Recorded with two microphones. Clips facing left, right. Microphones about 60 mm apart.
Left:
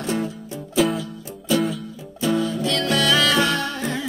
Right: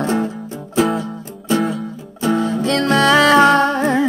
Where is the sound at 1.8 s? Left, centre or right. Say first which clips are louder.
Right 4 dB; right.